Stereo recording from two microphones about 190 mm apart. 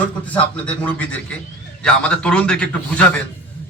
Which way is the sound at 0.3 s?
5° left (ahead or behind).